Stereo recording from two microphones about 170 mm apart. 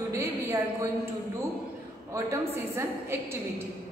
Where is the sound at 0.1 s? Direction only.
15° right (ahead or behind).